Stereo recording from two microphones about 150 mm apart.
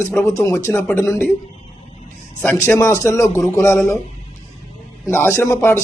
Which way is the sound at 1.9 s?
45° left (ahead or behind).